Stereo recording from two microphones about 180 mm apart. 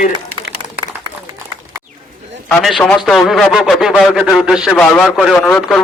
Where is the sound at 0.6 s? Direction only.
25° right (ahead or behind).